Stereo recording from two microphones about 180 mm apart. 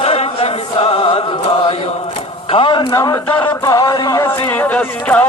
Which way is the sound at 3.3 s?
10° left (ahead or behind).